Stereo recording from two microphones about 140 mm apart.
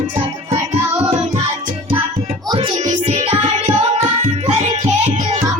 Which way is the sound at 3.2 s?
50° right (ahead or behind).